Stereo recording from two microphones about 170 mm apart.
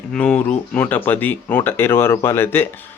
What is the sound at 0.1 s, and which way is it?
Speech, 5° left (ahead or behind).